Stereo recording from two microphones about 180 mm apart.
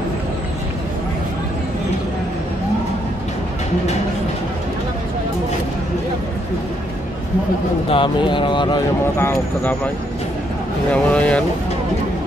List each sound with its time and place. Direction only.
7.9 s speech: 25° left (ahead or behind)
9.0 s speech: 10° left (ahead or behind)
10.9 s speech: 5° left (ahead or behind)